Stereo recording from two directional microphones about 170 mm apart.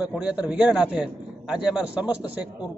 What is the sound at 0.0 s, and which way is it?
A man's voice, 5° right (ahead or behind).